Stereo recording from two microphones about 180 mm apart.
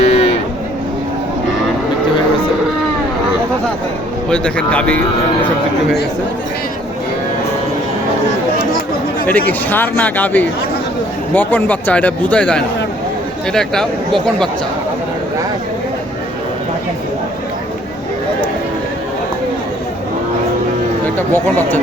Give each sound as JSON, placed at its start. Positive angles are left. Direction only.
{"t": 0.0, "sound": "a sound", "side_deg": 35}
{"t": 4.3, "sound": "speech", "side_deg": 5}
{"t": 9.2, "sound": "speech", "side_deg": 10}